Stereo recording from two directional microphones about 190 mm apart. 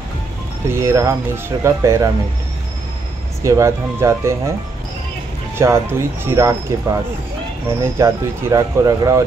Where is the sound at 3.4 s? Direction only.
15° right (ahead or behind).